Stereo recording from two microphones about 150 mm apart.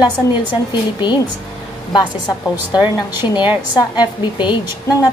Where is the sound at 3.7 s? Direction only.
30° left (ahead or behind).